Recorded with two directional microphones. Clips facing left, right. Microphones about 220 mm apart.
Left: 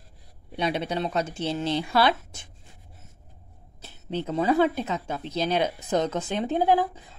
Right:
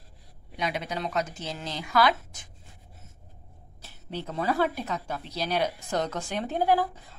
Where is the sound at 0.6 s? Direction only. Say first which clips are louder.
Left 5 dB; 30° left (ahead or behind).